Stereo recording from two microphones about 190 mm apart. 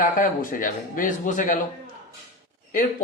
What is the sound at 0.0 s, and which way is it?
Speech, 45° left (ahead or behind).